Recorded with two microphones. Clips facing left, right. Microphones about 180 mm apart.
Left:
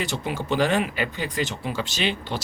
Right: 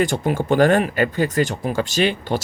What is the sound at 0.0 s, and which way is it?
Speech, 50° right (ahead or behind).